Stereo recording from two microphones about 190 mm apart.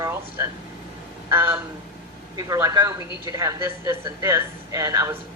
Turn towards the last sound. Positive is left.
turn(degrees=-15)  # may be behind; listen again after turning